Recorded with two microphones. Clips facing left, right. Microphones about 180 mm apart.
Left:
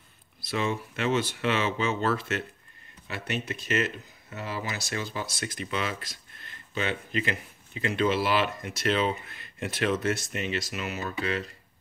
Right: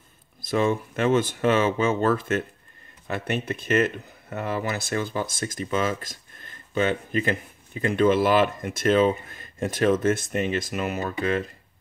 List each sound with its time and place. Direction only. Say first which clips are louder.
0.4 s speech: right 6 dB; 50° right (ahead or behind)